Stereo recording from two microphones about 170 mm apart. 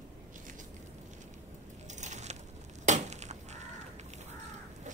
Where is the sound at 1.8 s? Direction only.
45° right (ahead or behind).